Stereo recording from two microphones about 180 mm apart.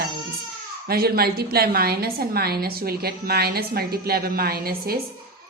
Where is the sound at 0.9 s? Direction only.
60° right (ahead or behind).